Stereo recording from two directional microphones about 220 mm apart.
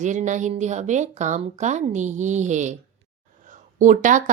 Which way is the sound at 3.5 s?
35° right (ahead or behind).